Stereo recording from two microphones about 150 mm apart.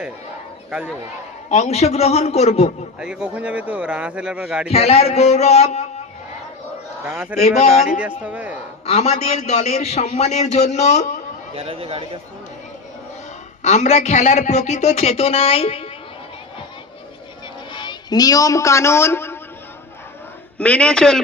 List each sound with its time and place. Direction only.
0.7 s a man's voice: 5° right (ahead or behind)
1.5 s a man's voice: 45° left (ahead or behind)
3.0 s speech: 5° right (ahead or behind)
4.7 s a man's voice: 45° left (ahead or behind)
7.0 s speech: 10° right (ahead or behind)
8.9 s a man's voice: 45° left (ahead or behind)
11.5 s speech: 40° right (ahead or behind)
13.6 s a man's voice: 50° left (ahead or behind)
17.7 s a man's voice: 30° left (ahead or behind)
20.6 s a man's voice: 10° left (ahead or behind)